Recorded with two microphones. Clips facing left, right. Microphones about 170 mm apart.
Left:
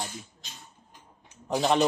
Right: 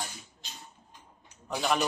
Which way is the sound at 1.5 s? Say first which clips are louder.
Left 5 dB; 35° left (ahead or behind).